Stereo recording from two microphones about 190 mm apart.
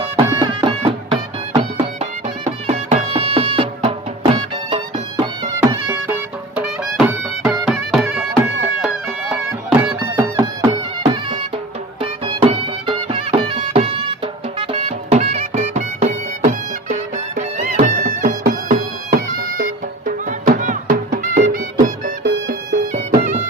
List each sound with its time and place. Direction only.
0.3 s music: 25° right (ahead or behind)
2.4 s music: 35° right (ahead or behind)
5.9 s music: 10° right (ahead or behind)
12.0 s music: 25° right (ahead or behind); by 22.1 s 45° right (ahead or behind)
22.2 s music: 65° right (ahead or behind)